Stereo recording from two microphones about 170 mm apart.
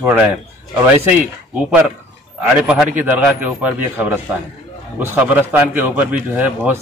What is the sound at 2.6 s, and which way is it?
A man's voice, 5° right (ahead or behind).